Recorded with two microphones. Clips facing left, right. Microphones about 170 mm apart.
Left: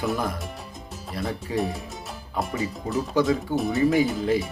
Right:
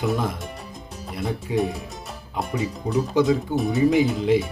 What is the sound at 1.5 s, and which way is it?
Speech, centre (ahead or behind).